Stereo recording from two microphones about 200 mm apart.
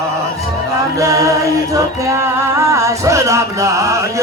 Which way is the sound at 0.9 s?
15° right (ahead or behind).